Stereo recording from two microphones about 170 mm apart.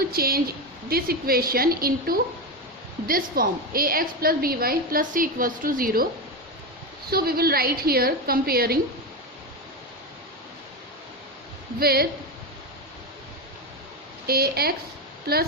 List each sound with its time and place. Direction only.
0.0 s a woman's voice: 60° right (ahead or behind)
7.1 s a woman's voice: 65° right (ahead or behind)
11.8 s a woman's voice: 65° right (ahead or behind)
14.3 s a woman's voice: 65° right (ahead or behind)